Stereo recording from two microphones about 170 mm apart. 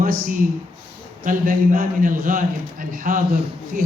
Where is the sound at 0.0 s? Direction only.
55° right (ahead or behind).